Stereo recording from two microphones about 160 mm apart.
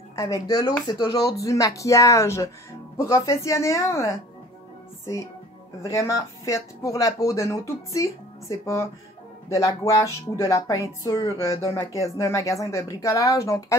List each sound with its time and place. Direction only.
0.1 s speech: 25° left (ahead or behind)
5.8 s speech: 20° left (ahead or behind)